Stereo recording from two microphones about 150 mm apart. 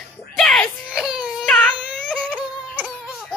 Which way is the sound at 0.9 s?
5° right (ahead or behind).